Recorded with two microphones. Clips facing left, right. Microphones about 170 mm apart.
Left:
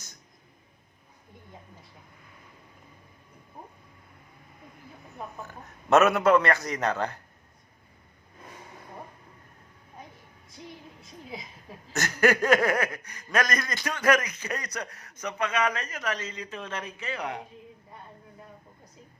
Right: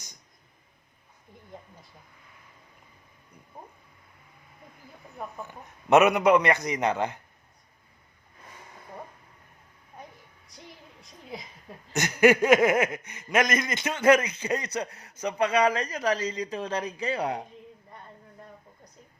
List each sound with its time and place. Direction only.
5.4 s a man's voice: 15° right (ahead or behind)
11.0 s a woman's voice: centre (ahead or behind)
11.9 s speech: 15° right (ahead or behind); by 17.4 s 30° right (ahead or behind)